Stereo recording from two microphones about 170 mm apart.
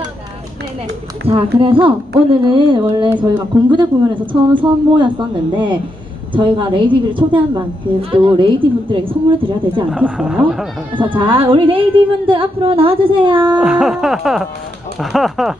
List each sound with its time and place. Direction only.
1.2 s a woman's voice: 30° right (ahead or behind)
9.8 s speech: 5° right (ahead or behind)
11.0 s speech: 30° right (ahead or behind)
13.6 s speech: 5° right (ahead or behind)